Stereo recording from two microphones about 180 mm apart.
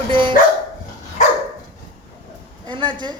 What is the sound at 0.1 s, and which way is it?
Speech, 25° right (ahead or behind).